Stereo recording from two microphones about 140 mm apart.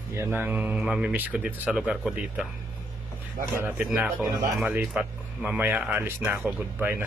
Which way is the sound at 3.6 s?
10° right (ahead or behind).